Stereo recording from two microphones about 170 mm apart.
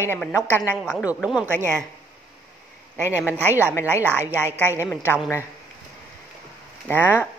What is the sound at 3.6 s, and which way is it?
A woman's voice, 15° left (ahead or behind).